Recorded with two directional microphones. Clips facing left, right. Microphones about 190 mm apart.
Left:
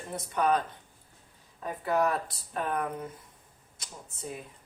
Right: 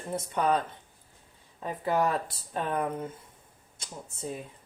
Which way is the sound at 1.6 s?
25° right (ahead or behind).